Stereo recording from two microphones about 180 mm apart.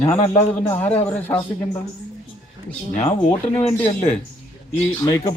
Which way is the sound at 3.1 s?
10° left (ahead or behind).